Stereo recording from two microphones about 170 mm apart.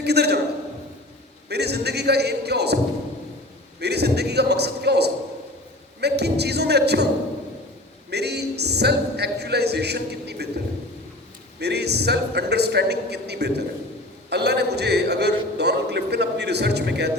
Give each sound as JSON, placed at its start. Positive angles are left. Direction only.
{"t": 0.0, "sound": "a man's voice", "side_deg": -75}
{"t": 1.5, "sound": "speech", "side_deg": -75}
{"t": 3.8, "sound": "speech", "side_deg": -75}
{"t": 8.1, "sound": "speech", "side_deg": -75}
{"t": 11.6, "sound": "a man's voice", "side_deg": -75}